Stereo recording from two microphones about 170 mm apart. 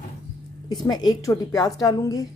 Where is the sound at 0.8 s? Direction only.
25° left (ahead or behind).